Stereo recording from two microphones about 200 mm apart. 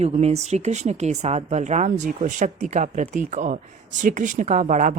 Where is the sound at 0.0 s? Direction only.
30° right (ahead or behind).